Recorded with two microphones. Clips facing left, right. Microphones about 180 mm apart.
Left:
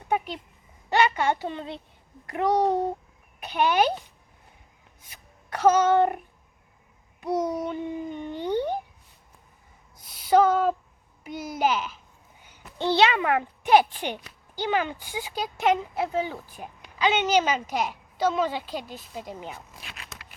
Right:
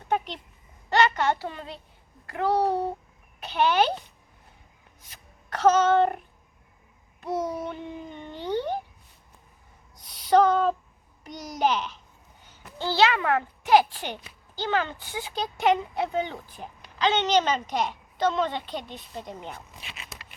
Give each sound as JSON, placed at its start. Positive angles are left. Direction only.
{"t": 0.9, "sound": "a woman's voice", "side_deg": 10}
{"t": 5.0, "sound": "speech", "side_deg": 10}
{"t": 7.2, "sound": "babbling", "side_deg": 10}
{"t": 10.0, "sound": "a sound", "side_deg": 5}
{"t": 11.2, "sound": "a woman's voice", "side_deg": 5}
{"t": 12.5, "sound": "a child's voice", "side_deg": 20}